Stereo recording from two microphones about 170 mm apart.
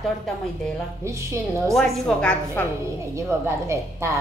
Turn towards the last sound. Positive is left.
turn(degrees=-15)  # may be behind; listen again after turning